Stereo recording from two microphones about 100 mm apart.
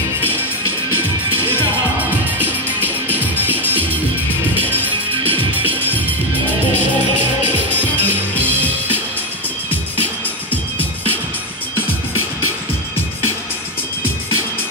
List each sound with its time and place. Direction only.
2.4 s music: 20° right (ahead or behind)
7.7 s music: 15° left (ahead or behind)